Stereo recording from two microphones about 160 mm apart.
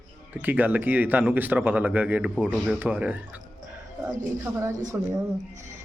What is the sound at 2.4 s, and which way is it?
Speech, centre (ahead or behind).